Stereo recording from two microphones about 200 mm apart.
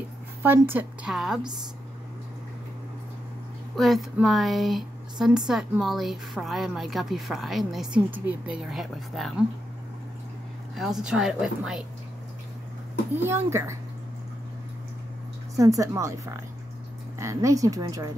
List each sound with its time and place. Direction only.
0.4 s speech: 10° right (ahead or behind)
3.7 s speech: centre (ahead or behind)
10.8 s speech: centre (ahead or behind)
13.1 s speech: 10° right (ahead or behind)
15.5 s speech: 15° right (ahead or behind)
17.2 s speech: 15° right (ahead or behind)